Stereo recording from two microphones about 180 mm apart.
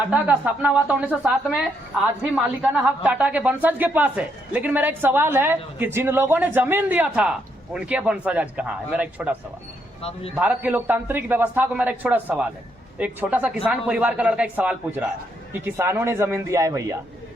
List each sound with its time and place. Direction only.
0.1 s a man's voice: 10° right (ahead or behind)
10.0 s a man's voice: 35° left (ahead or behind)
10.3 s a man's voice: 10° right (ahead or behind)